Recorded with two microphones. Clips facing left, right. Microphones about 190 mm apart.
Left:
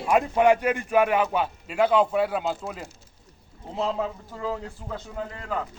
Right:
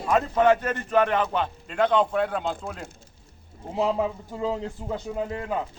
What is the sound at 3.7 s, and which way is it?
A man's voice, 15° right (ahead or behind).